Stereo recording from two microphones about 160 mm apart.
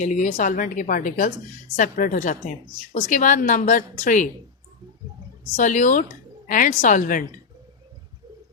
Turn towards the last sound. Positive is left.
turn(degrees=55)  # may be behind; listen again after turning